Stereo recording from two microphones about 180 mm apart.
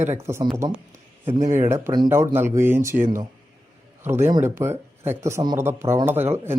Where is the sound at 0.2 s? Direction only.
15° right (ahead or behind).